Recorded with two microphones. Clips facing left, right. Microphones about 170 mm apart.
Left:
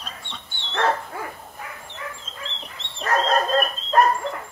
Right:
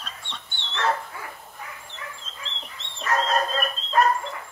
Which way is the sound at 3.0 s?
55° left (ahead or behind).